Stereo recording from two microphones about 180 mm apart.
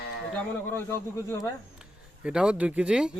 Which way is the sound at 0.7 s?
15° left (ahead or behind).